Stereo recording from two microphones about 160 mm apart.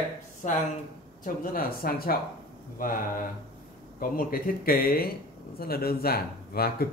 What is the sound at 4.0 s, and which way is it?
Speech, 65° left (ahead or behind).